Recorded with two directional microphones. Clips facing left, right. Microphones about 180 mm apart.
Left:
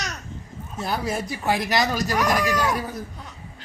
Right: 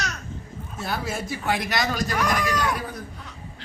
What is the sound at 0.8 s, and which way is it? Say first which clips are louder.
A man's voice: left 3 dB; centre (ahead or behind).